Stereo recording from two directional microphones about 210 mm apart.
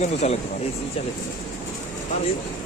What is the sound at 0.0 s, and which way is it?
Speech, 30° left (ahead or behind).